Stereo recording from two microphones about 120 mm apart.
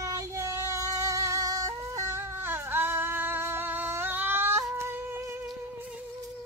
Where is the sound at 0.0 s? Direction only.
30° right (ahead or behind).